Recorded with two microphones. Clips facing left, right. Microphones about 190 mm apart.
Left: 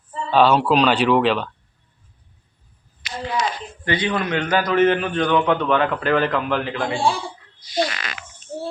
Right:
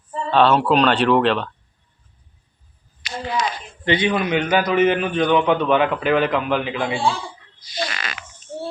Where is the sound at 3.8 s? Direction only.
20° right (ahead or behind).